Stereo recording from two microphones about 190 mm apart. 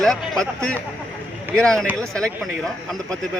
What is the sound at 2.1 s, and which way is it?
Speech, 5° left (ahead or behind).